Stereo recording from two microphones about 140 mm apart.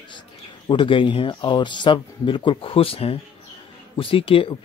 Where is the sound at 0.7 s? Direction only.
35° left (ahead or behind).